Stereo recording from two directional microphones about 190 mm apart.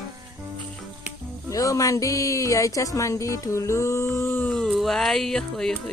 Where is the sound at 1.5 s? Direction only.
20° left (ahead or behind).